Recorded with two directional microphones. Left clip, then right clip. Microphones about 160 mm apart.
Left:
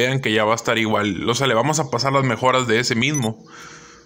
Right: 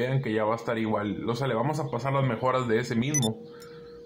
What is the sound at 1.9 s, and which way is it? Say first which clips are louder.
Speech: left 9 dB; 40° left (ahead or behind).